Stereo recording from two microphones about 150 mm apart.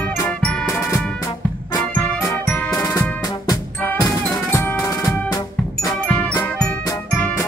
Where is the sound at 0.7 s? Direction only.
20° left (ahead or behind).